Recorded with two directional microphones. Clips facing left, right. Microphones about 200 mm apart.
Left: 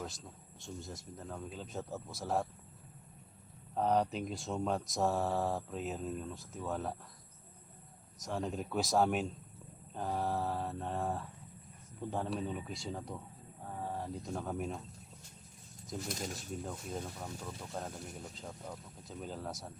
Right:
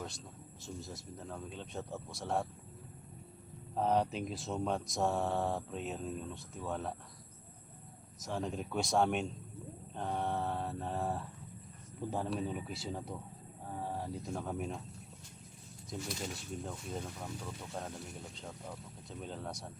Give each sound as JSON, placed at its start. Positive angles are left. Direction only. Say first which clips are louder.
{"t": 0.6, "sound": "speech", "louder": "even", "side_deg": 0}
{"t": 3.8, "sound": "speech", "louder": "even", "side_deg": 0}
{"t": 8.2, "sound": "speech", "louder": "even", "side_deg": 0}
{"t": 16.0, "sound": "speech", "louder": "even", "side_deg": 40}
{"t": 16.6, "sound": "speech", "louder": "even", "side_deg": 0}